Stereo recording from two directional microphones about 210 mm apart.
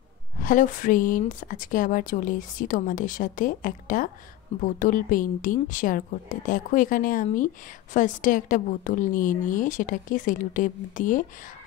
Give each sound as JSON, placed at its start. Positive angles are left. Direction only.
{"t": 0.4, "sound": "speech", "side_deg": 40}